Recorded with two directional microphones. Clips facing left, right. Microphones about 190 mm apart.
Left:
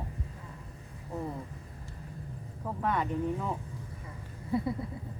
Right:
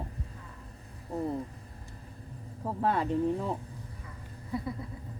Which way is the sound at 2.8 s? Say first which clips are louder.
Right 3 dB; 30° right (ahead or behind).